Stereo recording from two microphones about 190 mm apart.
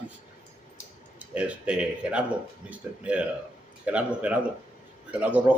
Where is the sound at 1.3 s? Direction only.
5° right (ahead or behind).